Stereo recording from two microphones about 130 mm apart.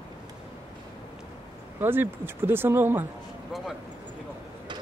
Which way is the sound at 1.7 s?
15° right (ahead or behind).